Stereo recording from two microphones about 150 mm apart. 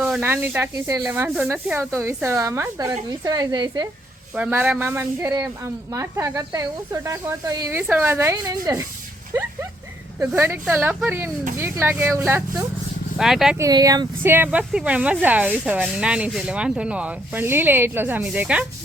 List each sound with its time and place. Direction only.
0.2 s speech: 15° right (ahead or behind)
4.4 s speech: 10° right (ahead or behind); by 8.9 s 25° right (ahead or behind)
10.2 s speech: 15° right (ahead or behind)
13.1 s speech: 5° right (ahead or behind)
13.6 s speech: 25° right (ahead or behind)
14.3 s speech: 10° right (ahead or behind)